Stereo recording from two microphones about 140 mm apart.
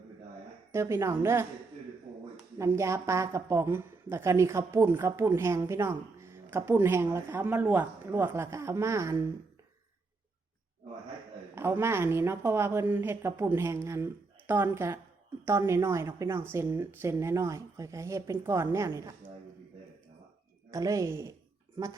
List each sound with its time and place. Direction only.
0.7 s a woman's voice: 20° right (ahead or behind)
2.6 s a woman's voice: 20° right (ahead or behind)
11.5 s a woman's voice: 15° right (ahead or behind)
20.7 s a woman's voice: 25° right (ahead or behind)